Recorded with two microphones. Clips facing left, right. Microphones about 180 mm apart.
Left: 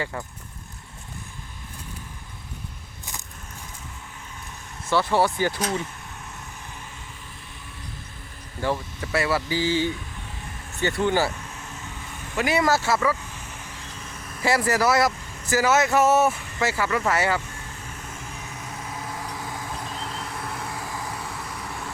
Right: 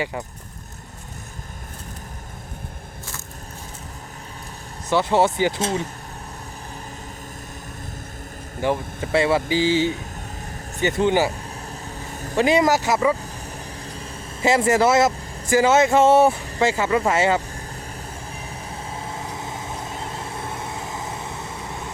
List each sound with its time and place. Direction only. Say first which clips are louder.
0.0 s speech: right 3 dB; 15° right (ahead or behind)
4.9 s speech: right 3 dB; 20° right (ahead or behind)
8.6 s speech: right 4 dB; 20° right (ahead or behind)
11.3 s vehicle: right 4 dB; 35° right (ahead or behind)
12.5 s speech: right 3 dB; 15° right (ahead or behind)
18.4 s vehicle: right 2 dB; 30° right (ahead or behind)